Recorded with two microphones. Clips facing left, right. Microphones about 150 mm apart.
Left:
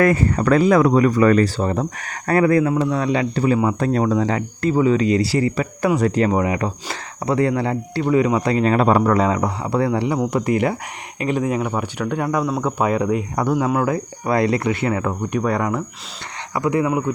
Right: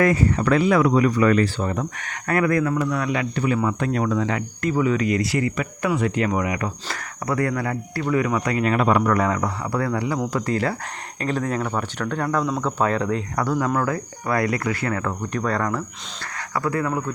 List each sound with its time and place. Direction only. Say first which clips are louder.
0.0 s speech: left 2 dB; 55° left (ahead or behind); by 17.1 s 20° left (ahead or behind)